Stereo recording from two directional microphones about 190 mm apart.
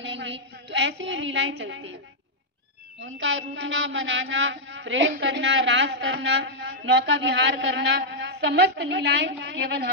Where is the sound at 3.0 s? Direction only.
80° right.